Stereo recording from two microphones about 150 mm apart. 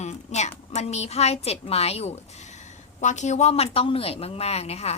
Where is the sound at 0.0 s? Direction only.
50° left (ahead or behind).